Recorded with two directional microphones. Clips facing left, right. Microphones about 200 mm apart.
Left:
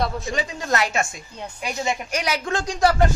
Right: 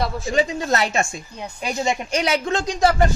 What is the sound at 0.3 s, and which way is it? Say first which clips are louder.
A woman's voice: right 4 dB; 25° right (ahead or behind).